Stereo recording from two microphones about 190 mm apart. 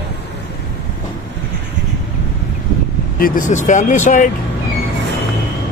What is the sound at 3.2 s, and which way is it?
Speech, 45° left (ahead or behind).